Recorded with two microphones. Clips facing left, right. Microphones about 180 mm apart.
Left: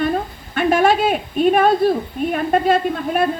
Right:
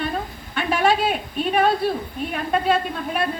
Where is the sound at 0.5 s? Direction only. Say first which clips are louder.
Left 5 dB; 45° left (ahead or behind).